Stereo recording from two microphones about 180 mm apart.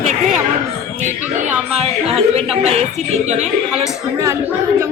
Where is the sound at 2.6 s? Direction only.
35° right (ahead or behind).